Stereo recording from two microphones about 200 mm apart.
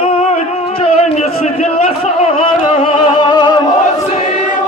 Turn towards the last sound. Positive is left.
turn(degrees=20)  # may be behind; listen again after turning